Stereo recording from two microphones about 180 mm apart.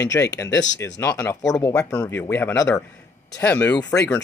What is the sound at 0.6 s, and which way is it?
Speech, 80° left.